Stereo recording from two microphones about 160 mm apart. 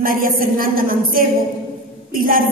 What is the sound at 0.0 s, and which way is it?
A woman's voice, 60° right (ahead or behind).